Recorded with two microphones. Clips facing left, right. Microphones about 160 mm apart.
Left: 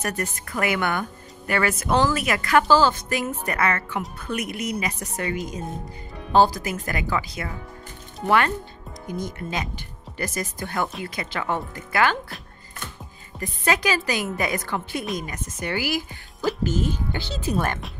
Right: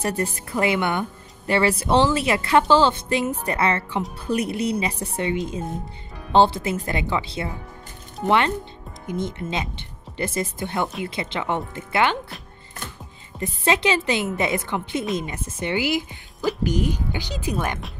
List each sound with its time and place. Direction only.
0.0 s a woman's voice: 30° right (ahead or behind)
13.4 s a woman's voice: 25° right (ahead or behind)